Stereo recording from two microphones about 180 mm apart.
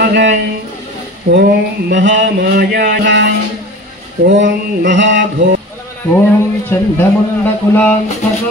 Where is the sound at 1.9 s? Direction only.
80° right; by 3.3 s 65° right (ahead or behind).